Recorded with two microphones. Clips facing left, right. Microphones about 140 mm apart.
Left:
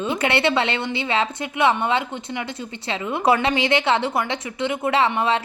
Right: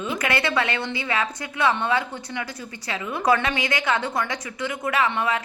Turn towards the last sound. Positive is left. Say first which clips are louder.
# left 4 dB
turn(degrees=25)  # may be behind; listen again after turning